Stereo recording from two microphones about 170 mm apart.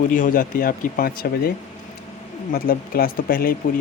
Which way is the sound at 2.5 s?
60° left (ahead or behind).